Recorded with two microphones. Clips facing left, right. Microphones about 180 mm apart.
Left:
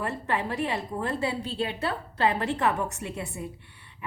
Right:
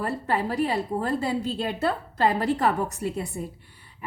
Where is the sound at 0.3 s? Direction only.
40° right (ahead or behind).